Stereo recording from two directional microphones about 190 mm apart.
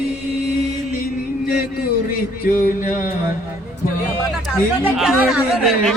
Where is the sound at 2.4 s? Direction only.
50° left (ahead or behind).